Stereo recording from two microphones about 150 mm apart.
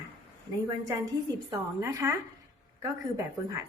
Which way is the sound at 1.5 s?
20° right (ahead or behind).